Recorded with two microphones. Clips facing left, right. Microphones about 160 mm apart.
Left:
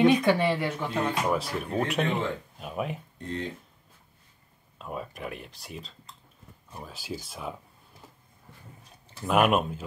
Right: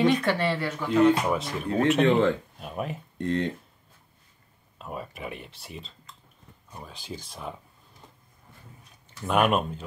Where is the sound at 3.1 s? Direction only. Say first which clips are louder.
Right 10 dB; 75° right (ahead or behind).